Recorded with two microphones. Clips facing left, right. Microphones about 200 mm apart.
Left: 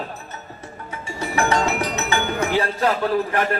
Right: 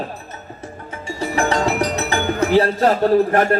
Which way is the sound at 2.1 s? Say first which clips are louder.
Right 6 dB; 40° right (ahead or behind).